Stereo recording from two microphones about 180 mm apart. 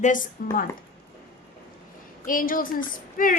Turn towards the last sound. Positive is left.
turn(degrees=50)  # may be behind; listen again after turning